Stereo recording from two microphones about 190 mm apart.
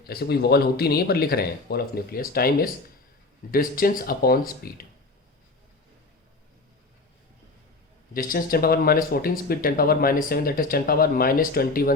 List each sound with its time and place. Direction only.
0.0 s speech: 55° left (ahead or behind)
8.1 s speech: 50° left (ahead or behind)